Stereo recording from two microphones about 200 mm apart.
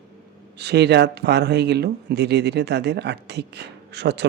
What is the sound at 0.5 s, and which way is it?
Speech, 55° right (ahead or behind).